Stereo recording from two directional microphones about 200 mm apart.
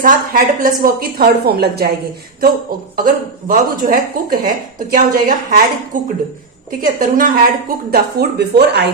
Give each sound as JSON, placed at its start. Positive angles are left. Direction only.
{"t": 0.0, "sound": "speech", "side_deg": -45}
{"t": 2.9, "sound": "speech", "side_deg": -45}